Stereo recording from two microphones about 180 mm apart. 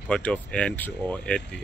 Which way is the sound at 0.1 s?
5° left (ahead or behind).